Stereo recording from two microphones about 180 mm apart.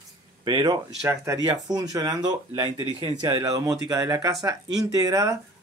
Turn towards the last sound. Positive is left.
turn(degrees=-20)  # may be behind; listen again after turning